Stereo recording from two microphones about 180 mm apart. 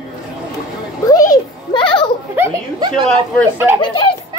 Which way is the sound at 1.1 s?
20° left (ahead or behind).